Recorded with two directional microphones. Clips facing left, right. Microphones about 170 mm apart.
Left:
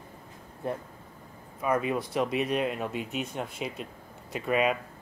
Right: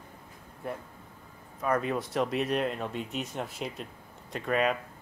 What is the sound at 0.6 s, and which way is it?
Speech, 25° left (ahead or behind).